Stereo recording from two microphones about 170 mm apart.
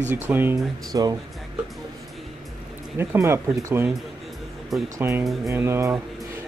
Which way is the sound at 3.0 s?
15° right (ahead or behind).